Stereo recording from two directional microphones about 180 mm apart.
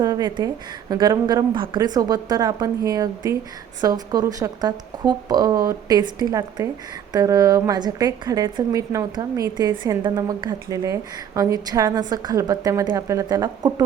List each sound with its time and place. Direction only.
0.0 s a woman's voice: 20° right (ahead or behind)